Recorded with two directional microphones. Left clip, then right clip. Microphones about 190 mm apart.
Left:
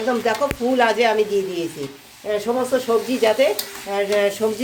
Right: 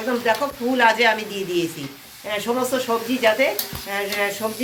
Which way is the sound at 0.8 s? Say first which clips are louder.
Right 1 dB; 50° left (ahead or behind).